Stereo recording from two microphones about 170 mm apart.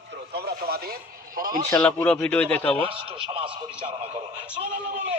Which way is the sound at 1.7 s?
15° left (ahead or behind).